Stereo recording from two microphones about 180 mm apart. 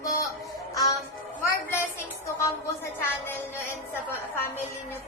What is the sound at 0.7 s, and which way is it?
Music, 20° left (ahead or behind).